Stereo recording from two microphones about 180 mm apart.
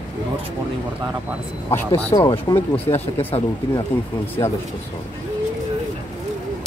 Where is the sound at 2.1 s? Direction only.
25° left (ahead or behind).